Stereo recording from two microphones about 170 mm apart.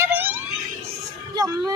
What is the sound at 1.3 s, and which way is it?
Speech, 20° right (ahead or behind).